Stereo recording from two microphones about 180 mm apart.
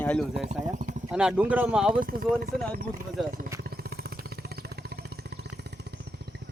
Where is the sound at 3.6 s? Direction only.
60° right (ahead or behind).